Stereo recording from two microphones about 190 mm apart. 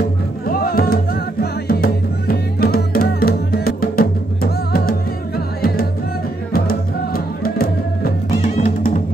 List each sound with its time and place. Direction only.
0.5 s music: 50° left (ahead or behind)
6.5 s music: 50° left (ahead or behind)